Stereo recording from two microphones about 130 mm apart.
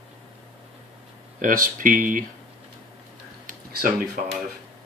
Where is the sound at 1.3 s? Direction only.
90° right.